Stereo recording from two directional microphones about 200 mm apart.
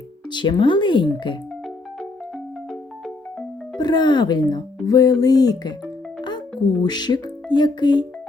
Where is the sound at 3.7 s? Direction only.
20° left (ahead or behind).